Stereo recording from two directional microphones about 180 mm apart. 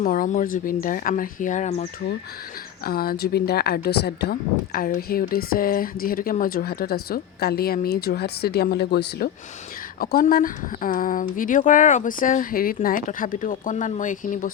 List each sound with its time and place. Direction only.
0.0 s speech: 50° left (ahead or behind)
2.8 s speech: 55° left (ahead or behind)
10.0 s speech: 55° left (ahead or behind)